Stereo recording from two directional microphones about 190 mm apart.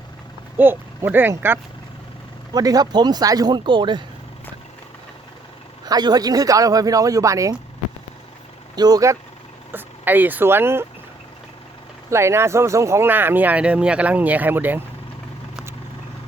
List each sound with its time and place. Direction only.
0.5 s speech: 10° right (ahead or behind)
5.8 s speech: 20° right (ahead or behind)
8.7 s speech: 20° right (ahead or behind)
12.1 s speech: 15° right (ahead or behind)